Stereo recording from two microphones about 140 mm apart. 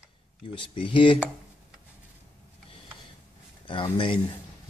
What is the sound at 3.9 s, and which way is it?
Speech, 35° left (ahead or behind).